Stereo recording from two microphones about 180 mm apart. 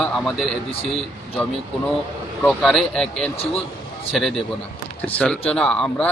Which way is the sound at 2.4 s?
5° left (ahead or behind).